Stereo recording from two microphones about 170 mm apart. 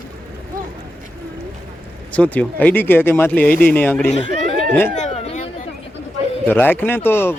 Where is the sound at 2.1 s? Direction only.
10° left (ahead or behind).